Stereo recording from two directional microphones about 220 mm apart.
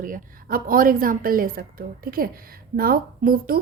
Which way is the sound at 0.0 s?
40° right (ahead or behind).